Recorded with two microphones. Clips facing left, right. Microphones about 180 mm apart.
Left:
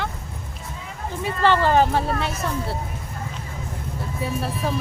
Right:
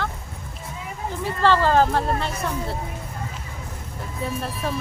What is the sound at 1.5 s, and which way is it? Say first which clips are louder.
Speech: even; 20° left (ahead or behind).